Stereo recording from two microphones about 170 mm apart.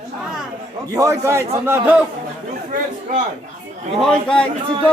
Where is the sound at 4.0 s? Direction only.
5° left (ahead or behind).